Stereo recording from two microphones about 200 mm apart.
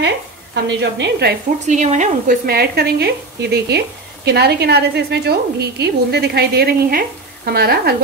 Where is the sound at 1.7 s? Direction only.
35° right (ahead or behind).